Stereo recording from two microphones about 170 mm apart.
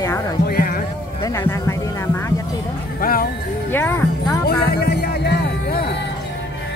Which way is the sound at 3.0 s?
60° left (ahead or behind).